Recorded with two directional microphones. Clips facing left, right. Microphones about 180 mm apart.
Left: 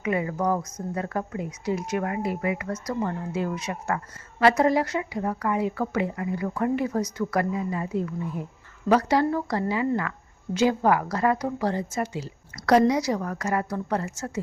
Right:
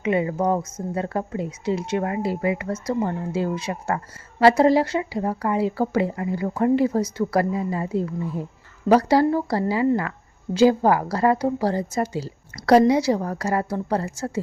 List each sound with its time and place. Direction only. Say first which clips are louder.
0.0 s a woman's voice: right 4 dB; 25° right (ahead or behind)